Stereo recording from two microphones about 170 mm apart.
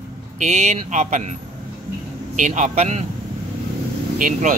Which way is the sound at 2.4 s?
45° right (ahead or behind).